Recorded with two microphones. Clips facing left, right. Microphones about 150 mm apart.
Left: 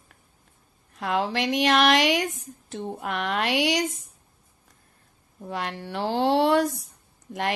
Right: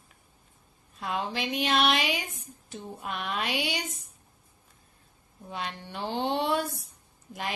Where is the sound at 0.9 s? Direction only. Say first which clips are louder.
Left 6 dB; 75° left (ahead or behind).